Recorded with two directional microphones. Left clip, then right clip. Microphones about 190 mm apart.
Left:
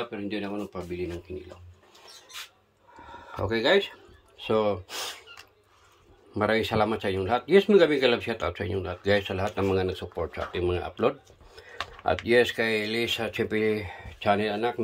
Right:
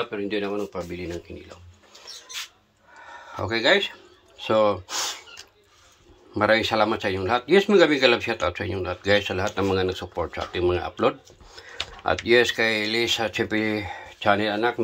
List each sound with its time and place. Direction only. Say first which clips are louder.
0.1 s a man's voice: right 6 dB; 10° left (ahead or behind)
3.0 s a sound: right 2 dB; 15° left (ahead or behind)
4.4 s speech: right 5 dB; 10° left (ahead or behind)
6.3 s a man's voice: right 5 dB; 10° left (ahead or behind)